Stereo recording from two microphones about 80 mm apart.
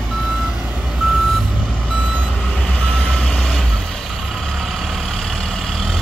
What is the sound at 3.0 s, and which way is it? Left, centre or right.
Vehicle, centre.